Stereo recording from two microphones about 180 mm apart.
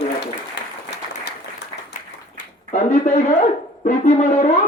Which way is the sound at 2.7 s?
40° left (ahead or behind).